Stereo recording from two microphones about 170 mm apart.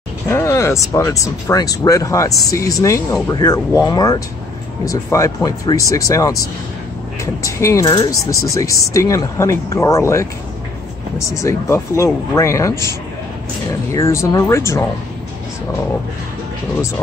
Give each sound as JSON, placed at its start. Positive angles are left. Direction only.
{"t": 0.3, "sound": "speech", "side_deg": 15}
{"t": 13.9, "sound": "speech", "side_deg": 15}